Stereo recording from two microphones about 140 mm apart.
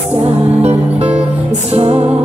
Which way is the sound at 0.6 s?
50° right (ahead or behind).